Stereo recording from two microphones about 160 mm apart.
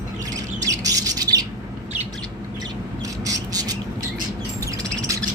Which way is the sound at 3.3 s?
25° right (ahead or behind).